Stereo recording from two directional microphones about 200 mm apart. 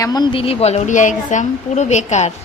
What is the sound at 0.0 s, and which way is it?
A woman's voice, 20° left (ahead or behind).